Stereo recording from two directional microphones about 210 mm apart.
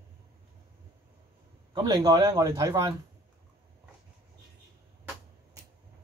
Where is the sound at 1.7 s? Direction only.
20° right (ahead or behind).